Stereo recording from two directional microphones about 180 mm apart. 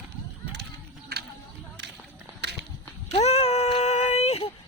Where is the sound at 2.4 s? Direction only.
70° right (ahead or behind).